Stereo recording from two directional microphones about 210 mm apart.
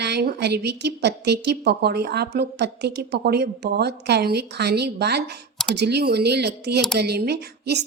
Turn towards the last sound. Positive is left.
turn(degrees=-50)  # may be behind; listen again after turning